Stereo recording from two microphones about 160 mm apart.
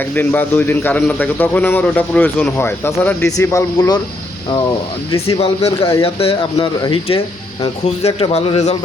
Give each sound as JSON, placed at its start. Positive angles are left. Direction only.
{"t": 0.0, "sound": "speech", "side_deg": 10}
{"t": 5.3, "sound": "a man's voice", "side_deg": 35}
{"t": 7.9, "sound": "a man's voice", "side_deg": 40}